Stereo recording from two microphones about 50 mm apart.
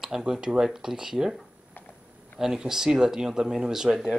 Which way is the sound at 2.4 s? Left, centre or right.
Centre.